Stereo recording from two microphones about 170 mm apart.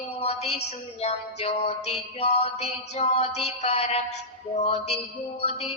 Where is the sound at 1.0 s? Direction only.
40° left (ahead or behind).